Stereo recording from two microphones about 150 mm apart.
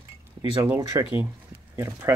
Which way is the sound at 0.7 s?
15° right (ahead or behind).